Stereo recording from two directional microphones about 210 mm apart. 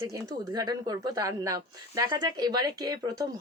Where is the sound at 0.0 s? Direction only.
15° right (ahead or behind).